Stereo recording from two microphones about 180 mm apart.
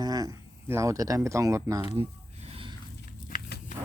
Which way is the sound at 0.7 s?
15° right (ahead or behind).